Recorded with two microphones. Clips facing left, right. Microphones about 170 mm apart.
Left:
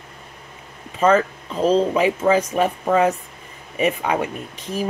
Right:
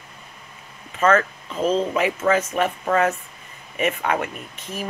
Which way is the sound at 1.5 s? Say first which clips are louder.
Left 4 dB; 35° left (ahead or behind).